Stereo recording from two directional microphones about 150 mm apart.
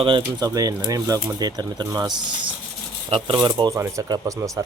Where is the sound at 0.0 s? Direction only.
30° right (ahead or behind).